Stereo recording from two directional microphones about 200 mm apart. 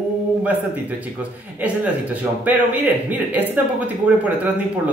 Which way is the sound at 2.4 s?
10° right (ahead or behind).